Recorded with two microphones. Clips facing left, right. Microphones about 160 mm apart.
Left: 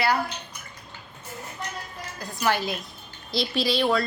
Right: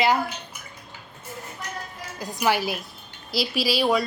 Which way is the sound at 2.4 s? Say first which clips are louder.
Right 2 dB; 10° right (ahead or behind).